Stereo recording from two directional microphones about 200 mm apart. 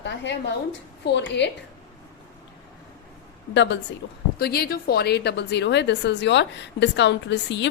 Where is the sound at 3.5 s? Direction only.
60° left (ahead or behind).